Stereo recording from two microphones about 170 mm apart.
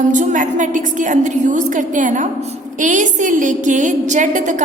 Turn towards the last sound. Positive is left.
turn(degrees=-45)  # may be behind; listen again after turning